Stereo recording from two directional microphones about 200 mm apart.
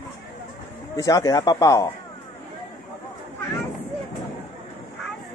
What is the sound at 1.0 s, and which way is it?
Speech, 20° left (ahead or behind).